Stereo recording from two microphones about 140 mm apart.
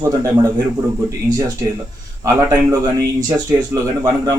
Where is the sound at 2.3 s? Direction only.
20° right (ahead or behind).